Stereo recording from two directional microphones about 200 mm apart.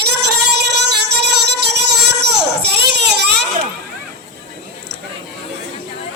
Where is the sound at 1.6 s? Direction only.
55° right (ahead or behind).